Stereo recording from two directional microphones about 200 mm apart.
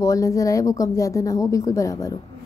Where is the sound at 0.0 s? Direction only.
15° left (ahead or behind).